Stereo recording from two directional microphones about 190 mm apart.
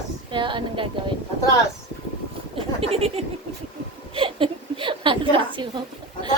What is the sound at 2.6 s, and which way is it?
A woman's voice, 30° right (ahead or behind).